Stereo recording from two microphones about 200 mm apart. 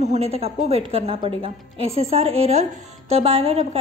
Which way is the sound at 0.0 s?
35° right (ahead or behind).